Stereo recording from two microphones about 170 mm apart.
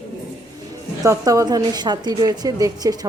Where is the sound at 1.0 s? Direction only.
20° right (ahead or behind).